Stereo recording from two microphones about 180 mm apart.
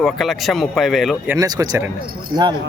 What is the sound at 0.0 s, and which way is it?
A man's voice, centre (ahead or behind).